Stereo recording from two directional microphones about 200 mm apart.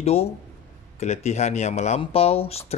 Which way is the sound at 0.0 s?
30° left (ahead or behind).